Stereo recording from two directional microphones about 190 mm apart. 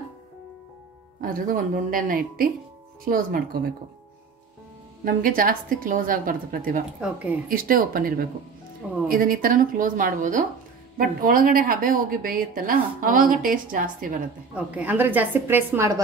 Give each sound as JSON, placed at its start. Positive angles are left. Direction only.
{"t": 1.2, "sound": "a woman's voice", "side_deg": -45}
{"t": 5.0, "sound": "a woman's voice", "side_deg": -45}
{"t": 14.5, "sound": "a woman's voice", "side_deg": -10}